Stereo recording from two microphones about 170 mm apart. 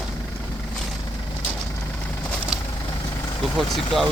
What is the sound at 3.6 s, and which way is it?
Speech, centre (ahead or behind).